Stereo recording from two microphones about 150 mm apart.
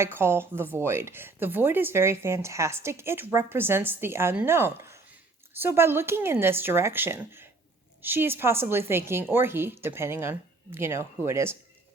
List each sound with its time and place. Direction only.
0.0 s speech: 15° right (ahead or behind)